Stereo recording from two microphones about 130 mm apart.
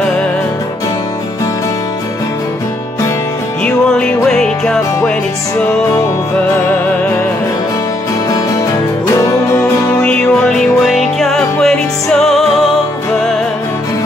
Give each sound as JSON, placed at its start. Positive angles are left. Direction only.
{"t": 3.6, "sound": "music", "side_deg": 5}
{"t": 9.2, "sound": "music", "side_deg": 20}
{"t": 10.0, "sound": "music", "side_deg": 5}